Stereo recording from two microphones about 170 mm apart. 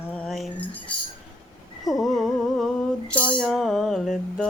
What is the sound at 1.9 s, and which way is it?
Music, centre (ahead or behind).